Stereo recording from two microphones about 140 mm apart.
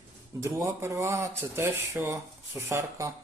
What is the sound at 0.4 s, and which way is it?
Speech, 20° right (ahead or behind).